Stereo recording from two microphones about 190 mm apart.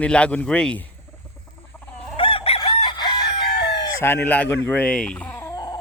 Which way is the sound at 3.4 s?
65° left (ahead or behind).